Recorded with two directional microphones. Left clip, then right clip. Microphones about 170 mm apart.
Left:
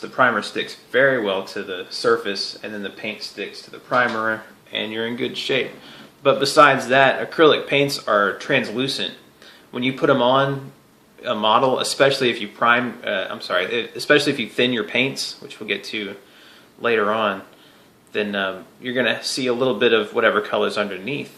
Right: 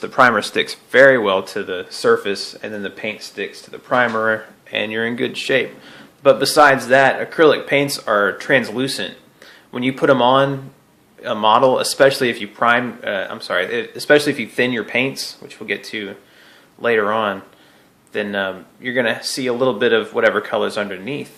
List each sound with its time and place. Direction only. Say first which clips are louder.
0.0 s speech: right 5 dB; 55° right (ahead or behind); by 21.2 s 20° right (ahead or behind)